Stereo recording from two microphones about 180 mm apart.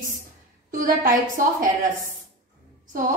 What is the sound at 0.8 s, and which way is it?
Speech, 50° right (ahead or behind).